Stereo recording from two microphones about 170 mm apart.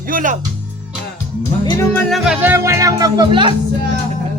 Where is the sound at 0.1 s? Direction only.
50° right (ahead or behind).